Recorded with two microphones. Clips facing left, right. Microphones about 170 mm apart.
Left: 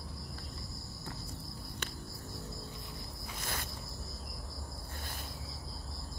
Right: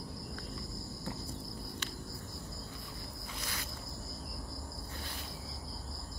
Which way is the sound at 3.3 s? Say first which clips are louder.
Left 3 dB; 50° left (ahead or behind).